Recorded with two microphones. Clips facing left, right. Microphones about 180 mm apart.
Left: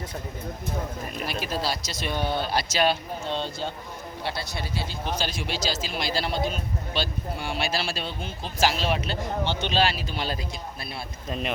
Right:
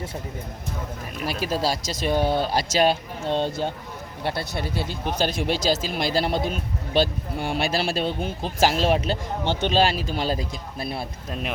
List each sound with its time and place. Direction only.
1.3 s speech: 40° right (ahead or behind)
11.3 s speech: 5° right (ahead or behind)